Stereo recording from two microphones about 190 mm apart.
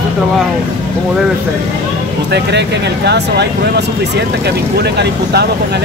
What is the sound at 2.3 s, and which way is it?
Speech, 65° right (ahead or behind).